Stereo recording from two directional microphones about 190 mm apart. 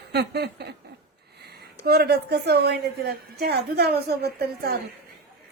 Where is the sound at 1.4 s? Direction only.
55° right (ahead or behind).